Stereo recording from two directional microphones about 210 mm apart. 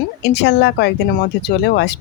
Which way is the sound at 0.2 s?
55° left (ahead or behind).